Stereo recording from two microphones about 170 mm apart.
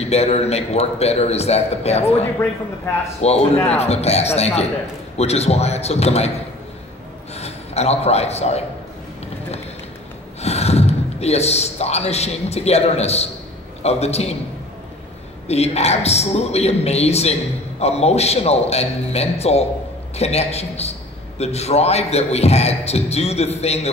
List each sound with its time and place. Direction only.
0.0 s a man's voice: 40° left (ahead or behind)
7.3 s a man's voice: 40° left (ahead or behind)
10.4 s a man's voice: 40° left (ahead or behind)
15.4 s a man's voice: 40° left (ahead or behind)